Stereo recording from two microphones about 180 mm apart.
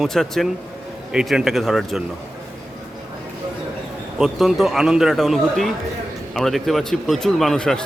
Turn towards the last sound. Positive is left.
turn(degrees=5)  # may be behind; listen again after turning